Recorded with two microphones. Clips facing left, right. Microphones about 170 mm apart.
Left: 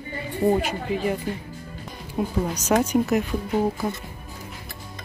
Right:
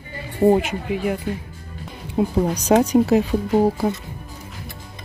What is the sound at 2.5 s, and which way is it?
Speech, 35° right (ahead or behind).